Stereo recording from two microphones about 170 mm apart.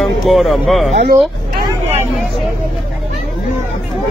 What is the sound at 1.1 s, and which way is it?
Vehicle, 15° right (ahead or behind).